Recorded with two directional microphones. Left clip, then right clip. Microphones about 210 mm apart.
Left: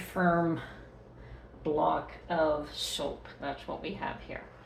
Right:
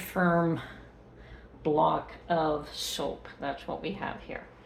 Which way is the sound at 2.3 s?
50° right (ahead or behind).